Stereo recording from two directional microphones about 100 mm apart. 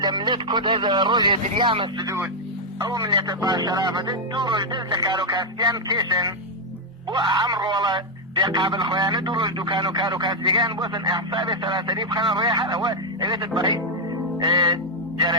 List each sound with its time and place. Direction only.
0.0 s speech: 50° right (ahead or behind)